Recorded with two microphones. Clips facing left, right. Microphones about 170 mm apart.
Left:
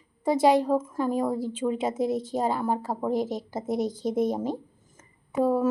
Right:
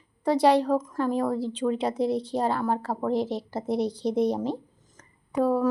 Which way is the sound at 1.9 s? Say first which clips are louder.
Right 1 dB; 45° left (ahead or behind).